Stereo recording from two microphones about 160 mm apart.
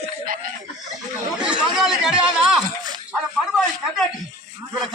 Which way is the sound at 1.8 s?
5° right (ahead or behind).